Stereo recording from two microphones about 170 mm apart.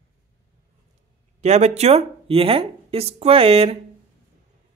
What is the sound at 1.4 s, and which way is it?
Speech, 40° right (ahead or behind).